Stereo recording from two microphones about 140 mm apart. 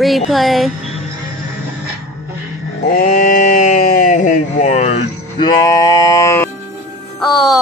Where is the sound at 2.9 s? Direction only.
80° left; by 5.0 s 55° left (ahead or behind).